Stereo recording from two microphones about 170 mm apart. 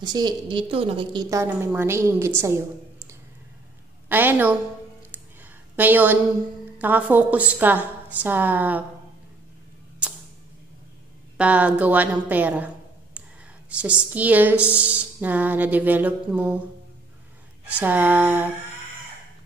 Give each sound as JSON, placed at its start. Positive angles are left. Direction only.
{"t": 0.0, "sound": "a woman's voice", "side_deg": -25}
{"t": 1.3, "sound": "a woman's voice", "side_deg": -15}
{"t": 4.1, "sound": "a woman's voice", "side_deg": -10}
{"t": 5.8, "sound": "a woman's voice", "side_deg": -10}
{"t": 11.3, "sound": "a woman's voice", "side_deg": -10}
{"t": 17.6, "sound": "a woman's voice", "side_deg": -10}